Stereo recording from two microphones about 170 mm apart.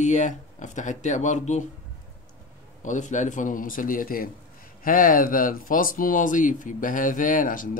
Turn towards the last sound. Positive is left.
turn(degrees=50)  # may be behind; listen again after turning